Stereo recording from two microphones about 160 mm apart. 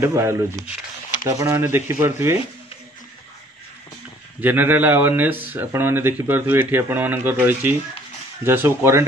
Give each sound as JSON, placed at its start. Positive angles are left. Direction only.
{"t": 0.0, "sound": "speech", "side_deg": -15}
{"t": 4.4, "sound": "speech", "side_deg": -10}